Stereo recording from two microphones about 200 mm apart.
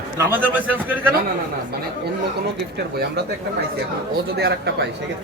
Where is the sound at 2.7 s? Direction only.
55° right (ahead or behind).